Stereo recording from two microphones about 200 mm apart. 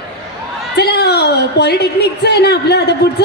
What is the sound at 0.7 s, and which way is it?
A woman's voice, 55° left (ahead or behind).